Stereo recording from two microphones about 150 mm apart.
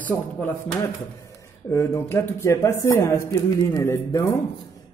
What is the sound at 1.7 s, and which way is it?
Speech, 15° left (ahead or behind).